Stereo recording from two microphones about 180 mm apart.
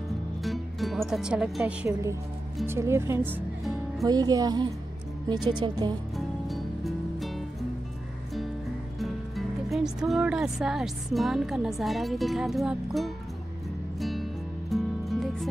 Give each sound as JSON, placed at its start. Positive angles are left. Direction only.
{"t": 0.4, "sound": "music", "side_deg": 0}
{"t": 2.6, "sound": "speech", "side_deg": -15}
{"t": 6.1, "sound": "music", "side_deg": 0}
{"t": 9.0, "sound": "speech", "side_deg": 0}
{"t": 14.7, "sound": "music", "side_deg": 0}